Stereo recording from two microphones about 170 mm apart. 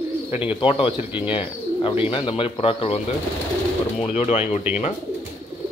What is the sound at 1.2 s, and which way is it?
Speech, 30° left (ahead or behind).